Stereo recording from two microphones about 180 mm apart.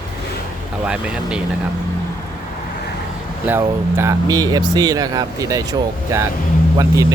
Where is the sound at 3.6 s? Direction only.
15° right (ahead or behind).